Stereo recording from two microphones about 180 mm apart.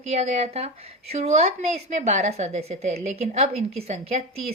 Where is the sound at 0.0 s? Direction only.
35° right (ahead or behind).